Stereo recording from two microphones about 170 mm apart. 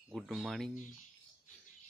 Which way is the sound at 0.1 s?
Centre (ahead or behind).